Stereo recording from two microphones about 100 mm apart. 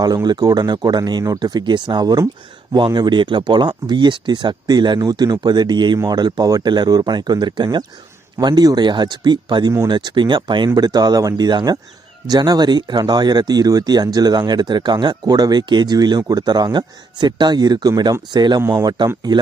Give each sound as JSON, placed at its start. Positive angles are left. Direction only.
{"t": 0.0, "sound": "speech", "side_deg": -40}